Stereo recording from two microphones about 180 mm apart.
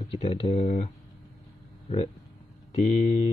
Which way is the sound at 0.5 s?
40° left (ahead or behind).